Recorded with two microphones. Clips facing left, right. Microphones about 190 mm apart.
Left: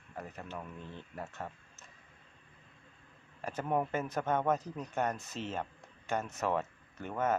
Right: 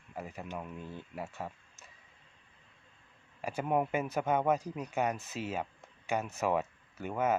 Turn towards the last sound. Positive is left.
turn(degrees=-10)  # may be behind; listen again after turning